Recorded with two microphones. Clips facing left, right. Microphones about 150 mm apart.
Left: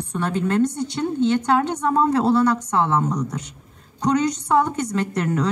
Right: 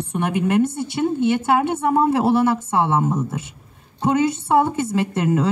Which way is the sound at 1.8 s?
20° right (ahead or behind).